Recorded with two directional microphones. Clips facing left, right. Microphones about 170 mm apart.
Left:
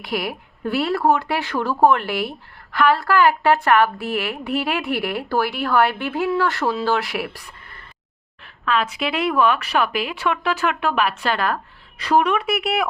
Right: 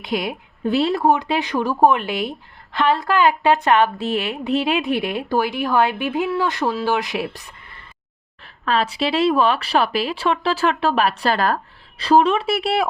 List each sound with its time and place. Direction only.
0.0 s a woman's voice: 20° right (ahead or behind)
8.6 s a woman's voice: 35° right (ahead or behind)